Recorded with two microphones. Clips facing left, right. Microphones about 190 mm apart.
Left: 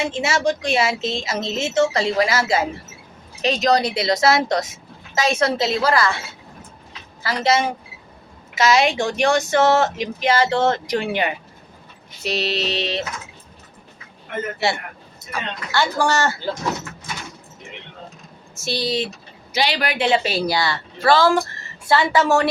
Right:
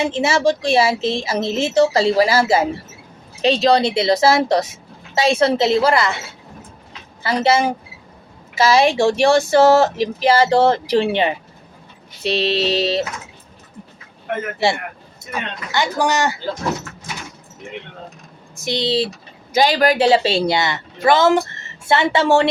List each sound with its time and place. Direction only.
0.1 s speech: 30° right (ahead or behind)
7.2 s speech: 30° right (ahead or behind)
15.3 s speech: 20° right (ahead or behind)
18.6 s speech: 20° right (ahead or behind)
19.5 s speech: 45° right (ahead or behind)